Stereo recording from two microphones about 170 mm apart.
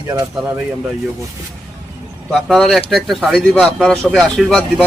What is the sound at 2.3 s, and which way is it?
Speech, centre (ahead or behind).